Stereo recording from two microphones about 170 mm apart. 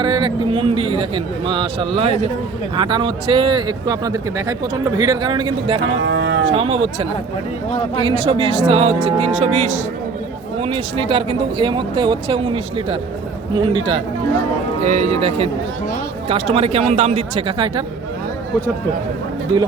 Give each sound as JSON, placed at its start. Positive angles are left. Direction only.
{"t": 0.0, "sound": "speech", "side_deg": -30}
{"t": 6.0, "sound": "speech", "side_deg": -90}
{"t": 6.4, "sound": "speech", "side_deg": -35}
{"t": 10.6, "sound": "speech", "side_deg": -30}
{"t": 14.8, "sound": "speech", "side_deg": -45}